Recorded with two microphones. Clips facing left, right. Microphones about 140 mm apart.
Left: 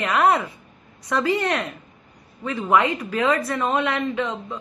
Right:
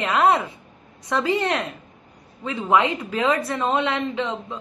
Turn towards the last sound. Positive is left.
turn(degrees=-20)  # may be behind; listen again after turning